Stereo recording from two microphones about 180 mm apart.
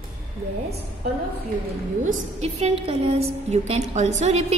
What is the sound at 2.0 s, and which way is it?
A woman's voice, 40° right (ahead or behind).